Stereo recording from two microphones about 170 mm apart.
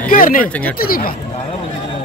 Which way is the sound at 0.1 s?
55° left (ahead or behind).